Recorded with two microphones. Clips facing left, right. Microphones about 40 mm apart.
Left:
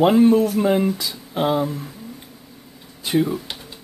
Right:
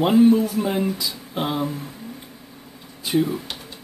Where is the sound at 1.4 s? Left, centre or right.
Centre.